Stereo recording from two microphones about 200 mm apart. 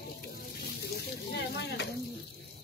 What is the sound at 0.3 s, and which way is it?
Sizzle, 50° left (ahead or behind).